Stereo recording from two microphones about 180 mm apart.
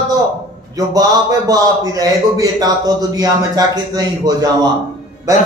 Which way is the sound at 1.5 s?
20° right (ahead or behind).